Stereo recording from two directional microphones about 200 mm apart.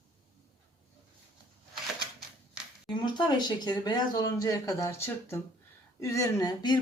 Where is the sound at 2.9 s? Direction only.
25° left (ahead or behind).